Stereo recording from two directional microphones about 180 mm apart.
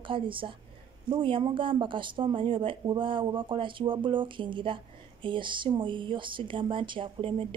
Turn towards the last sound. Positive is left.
turn(degrees=-30)  # may be behind; listen again after turning